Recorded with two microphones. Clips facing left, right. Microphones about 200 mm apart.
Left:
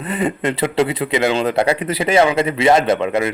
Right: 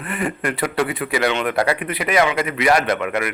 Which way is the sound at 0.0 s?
20° left (ahead or behind).